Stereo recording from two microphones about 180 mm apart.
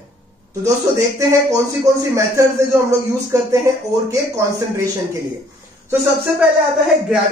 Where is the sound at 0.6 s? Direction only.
20° right (ahead or behind).